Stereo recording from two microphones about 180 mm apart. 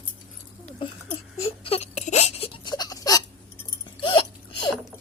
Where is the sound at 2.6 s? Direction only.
20° left (ahead or behind).